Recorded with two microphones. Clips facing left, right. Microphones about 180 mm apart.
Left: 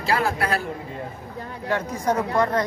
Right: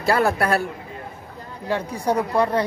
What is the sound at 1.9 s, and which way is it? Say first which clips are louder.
Speech: right 1 dB; 35° right (ahead or behind).